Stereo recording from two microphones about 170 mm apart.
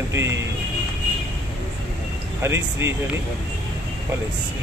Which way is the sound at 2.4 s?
15° right (ahead or behind).